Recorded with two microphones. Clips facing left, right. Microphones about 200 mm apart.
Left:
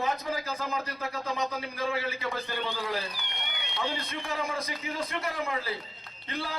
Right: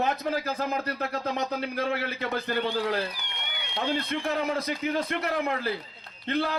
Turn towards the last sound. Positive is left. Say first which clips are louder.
# right 8 dB
turn(degrees=-65)  # may be behind; listen again after turning